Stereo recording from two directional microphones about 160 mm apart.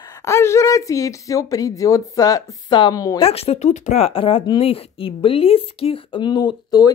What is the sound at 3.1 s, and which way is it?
Speech, 35° left (ahead or behind).